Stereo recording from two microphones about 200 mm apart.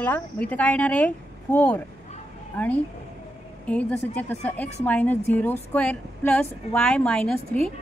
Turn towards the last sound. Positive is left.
turn(degrees=5)  # may be behind; listen again after turning